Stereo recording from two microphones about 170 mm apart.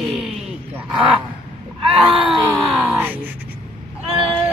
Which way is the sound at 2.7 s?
5° right (ahead or behind).